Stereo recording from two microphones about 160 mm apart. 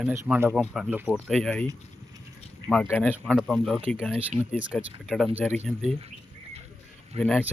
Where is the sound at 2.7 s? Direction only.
10° left (ahead or behind).